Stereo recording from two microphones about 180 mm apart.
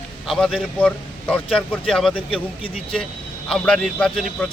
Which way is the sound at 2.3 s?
30° left (ahead or behind).